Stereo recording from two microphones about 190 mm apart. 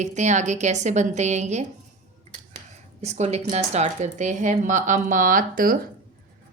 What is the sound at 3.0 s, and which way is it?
Speech, 35° right (ahead or behind).